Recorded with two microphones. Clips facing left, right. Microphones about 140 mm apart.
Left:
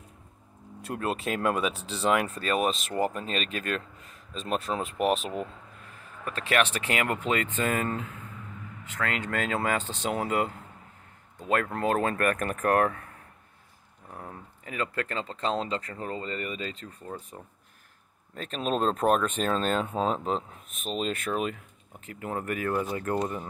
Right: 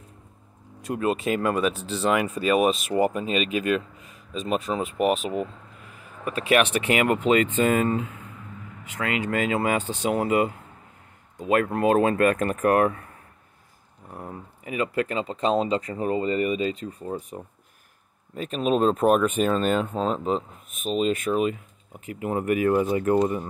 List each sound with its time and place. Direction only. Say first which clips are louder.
0.8 s speech: right 6 dB; centre (ahead or behind)
14.1 s speech: right 5 dB; 10° right (ahead or behind)